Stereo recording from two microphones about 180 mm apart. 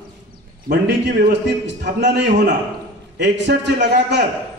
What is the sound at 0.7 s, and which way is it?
A man's voice, 70° right (ahead or behind).